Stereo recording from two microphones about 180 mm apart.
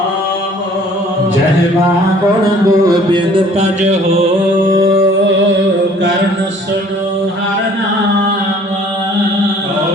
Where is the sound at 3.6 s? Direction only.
40° right (ahead or behind).